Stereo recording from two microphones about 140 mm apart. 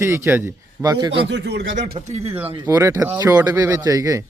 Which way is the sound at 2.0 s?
40° right (ahead or behind).